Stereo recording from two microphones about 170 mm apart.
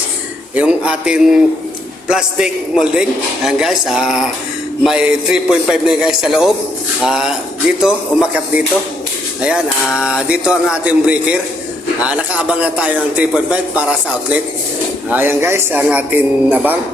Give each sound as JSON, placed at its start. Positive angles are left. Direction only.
{"t": 0.5, "sound": "a man's voice", "side_deg": -5}
{"t": 15.1, "sound": "speech", "side_deg": -10}